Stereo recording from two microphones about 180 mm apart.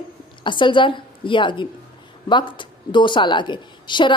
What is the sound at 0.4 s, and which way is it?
A woman's voice, 25° left (ahead or behind).